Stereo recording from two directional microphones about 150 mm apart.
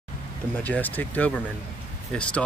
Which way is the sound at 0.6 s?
10° left (ahead or behind).